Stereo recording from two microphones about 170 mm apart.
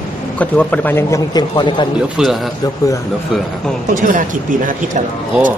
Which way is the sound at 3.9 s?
50° right (ahead or behind).